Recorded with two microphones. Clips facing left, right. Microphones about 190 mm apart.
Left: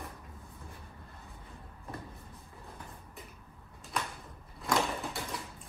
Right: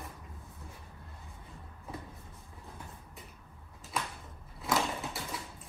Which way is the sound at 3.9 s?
Centre (ahead or behind).